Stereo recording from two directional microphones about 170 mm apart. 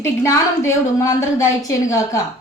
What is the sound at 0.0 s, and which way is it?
A woman's voice, 15° left (ahead or behind).